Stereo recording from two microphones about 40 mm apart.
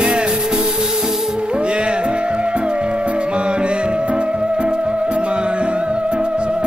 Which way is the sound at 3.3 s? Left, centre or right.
Right.